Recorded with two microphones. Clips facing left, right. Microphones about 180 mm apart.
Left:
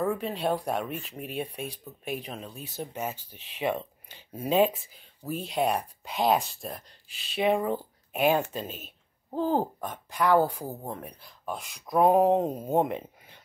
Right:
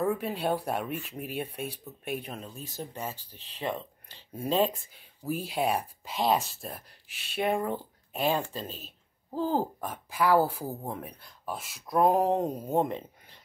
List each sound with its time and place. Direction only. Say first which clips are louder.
0.0 s speech: left 1 dB; 5° right (ahead or behind)
2.5 s speech: even; 40° right (ahead or behind)
2.8 s speech: left 4 dB; 15° left (ahead or behind)
5.2 s speech: left 1 dB; 10° right (ahead or behind)
9.6 s speech: left 1 dB; 5° right (ahead or behind)